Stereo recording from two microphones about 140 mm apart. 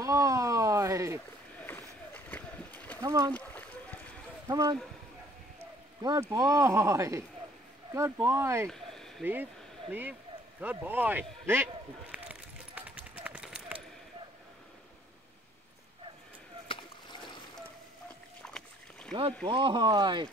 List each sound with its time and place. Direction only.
0.0 s a sound: 25° right (ahead or behind)
1.6 s a sound: 15° left (ahead or behind)
3.0 s speech: 25° right (ahead or behind)
3.3 s rowboat: 10° left (ahead or behind)
4.5 s speech: 25° right (ahead or behind)
6.2 s speech: 25° right (ahead or behind)
8.6 s a sound: 5° left (ahead or behind)
9.2 s speech: 15° right (ahead or behind)
10.6 s a sound: 10° right (ahead or behind)
16.6 s rowboat: 35° left (ahead or behind)
18.4 s boat: 5° left (ahead or behind)
19.4 s speech: 35° right (ahead or behind)